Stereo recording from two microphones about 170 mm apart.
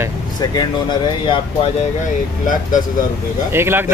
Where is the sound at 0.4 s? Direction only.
25° left (ahead or behind).